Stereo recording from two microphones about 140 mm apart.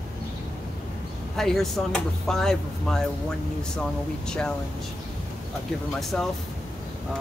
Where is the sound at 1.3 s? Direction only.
Centre (ahead or behind).